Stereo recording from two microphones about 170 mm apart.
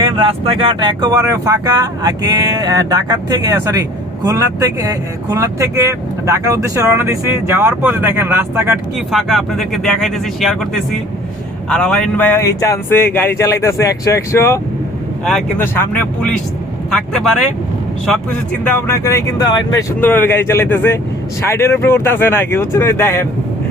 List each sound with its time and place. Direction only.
0.0 s speech: 30° right (ahead or behind); by 8.7 s 15° right (ahead or behind)
9.1 s speech: centre (ahead or behind)
11.7 s speech: 5° left (ahead or behind)
15.2 s speech: 5° left (ahead or behind); by 19.8 s 25° left (ahead or behind)
20.0 s speech: 10° left (ahead or behind)